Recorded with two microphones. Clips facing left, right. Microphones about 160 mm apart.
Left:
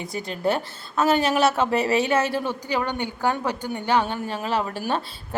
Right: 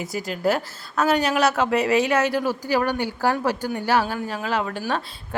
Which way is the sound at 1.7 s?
30° left (ahead or behind).